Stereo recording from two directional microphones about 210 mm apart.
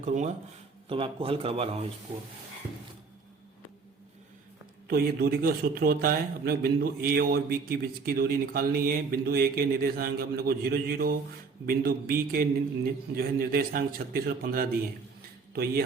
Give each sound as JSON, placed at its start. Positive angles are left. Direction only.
{"t": 0.0, "sound": "a man's voice", "side_deg": -35}
{"t": 4.9, "sound": "a man's voice", "side_deg": -45}